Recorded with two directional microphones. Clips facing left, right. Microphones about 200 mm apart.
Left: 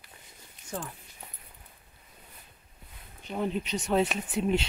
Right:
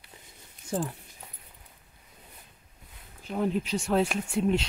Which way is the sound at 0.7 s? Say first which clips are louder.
Right 7 dB; 30° right (ahead or behind).